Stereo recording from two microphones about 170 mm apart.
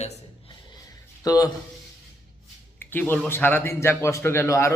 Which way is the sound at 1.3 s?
20° left (ahead or behind).